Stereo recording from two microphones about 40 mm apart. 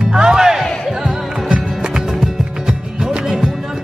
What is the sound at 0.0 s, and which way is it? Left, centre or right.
Music, right.